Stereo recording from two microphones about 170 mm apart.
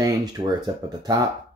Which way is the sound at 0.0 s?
25° right (ahead or behind).